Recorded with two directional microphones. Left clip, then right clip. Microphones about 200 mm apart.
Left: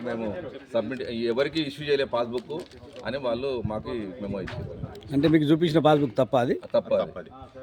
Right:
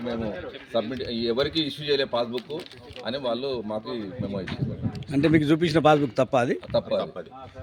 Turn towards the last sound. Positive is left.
turn(degrees=-10)  # may be behind; listen again after turning